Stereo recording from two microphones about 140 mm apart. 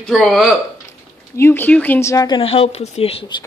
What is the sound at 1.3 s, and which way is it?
Speech, 15° left (ahead or behind).